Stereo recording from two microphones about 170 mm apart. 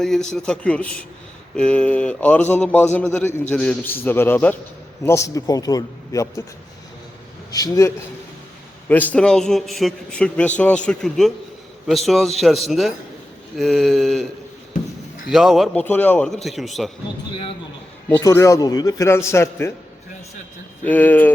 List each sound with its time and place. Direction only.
0.0 s a man's voice: 5° left (ahead or behind); by 6.4 s 20° left (ahead or behind)
7.5 s a man's voice: 20° left (ahead or behind); by 14.3 s centre (ahead or behind)
15.3 s a man's voice: centre (ahead or behind)
18.2 s a man's voice: 20° left (ahead or behind)
20.8 s a man's voice: 10° left (ahead or behind)